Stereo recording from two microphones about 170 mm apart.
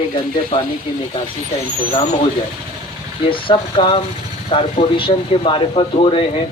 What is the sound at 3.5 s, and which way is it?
Speech, 30° left (ahead or behind).